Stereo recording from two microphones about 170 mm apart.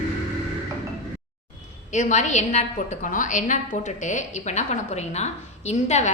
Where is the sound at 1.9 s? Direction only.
45° left (ahead or behind).